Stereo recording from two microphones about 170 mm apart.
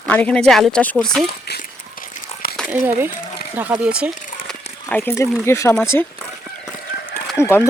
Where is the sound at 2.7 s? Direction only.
15° right (ahead or behind).